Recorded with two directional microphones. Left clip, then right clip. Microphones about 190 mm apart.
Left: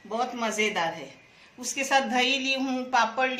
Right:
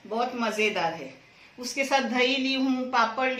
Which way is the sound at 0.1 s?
50° left (ahead or behind).